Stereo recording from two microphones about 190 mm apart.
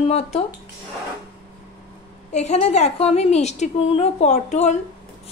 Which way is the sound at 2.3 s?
35° left (ahead or behind).